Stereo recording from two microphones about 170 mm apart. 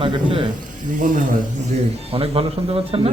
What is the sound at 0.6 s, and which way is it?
Speech, 50° right (ahead or behind).